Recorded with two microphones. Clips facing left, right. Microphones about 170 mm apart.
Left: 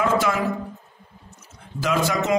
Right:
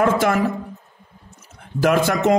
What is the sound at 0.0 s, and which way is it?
Speech, 55° right (ahead or behind).